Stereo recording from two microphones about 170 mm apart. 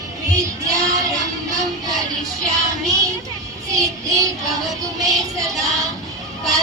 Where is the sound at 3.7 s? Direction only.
20° right (ahead or behind).